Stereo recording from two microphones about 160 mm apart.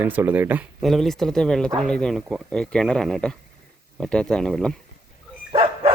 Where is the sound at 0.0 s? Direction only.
10° right (ahead or behind).